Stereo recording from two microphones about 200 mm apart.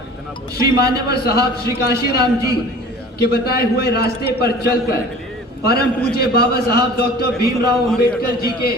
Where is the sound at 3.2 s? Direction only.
50° left (ahead or behind).